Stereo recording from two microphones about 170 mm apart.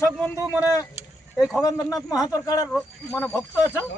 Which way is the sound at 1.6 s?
20° left (ahead or behind).